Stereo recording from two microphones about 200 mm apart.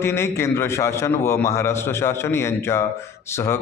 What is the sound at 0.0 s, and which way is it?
A man's voice, 15° left (ahead or behind).